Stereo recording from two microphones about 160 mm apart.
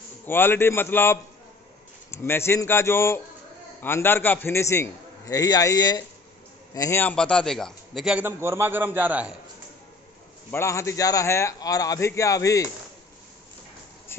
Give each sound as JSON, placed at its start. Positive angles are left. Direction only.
{"t": 0.3, "sound": "a man's voice", "side_deg": 15}
{"t": 10.5, "sound": "a man's voice", "side_deg": 15}